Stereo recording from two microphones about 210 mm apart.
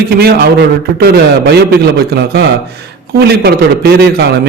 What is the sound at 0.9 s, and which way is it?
Speech, 50° right (ahead or behind).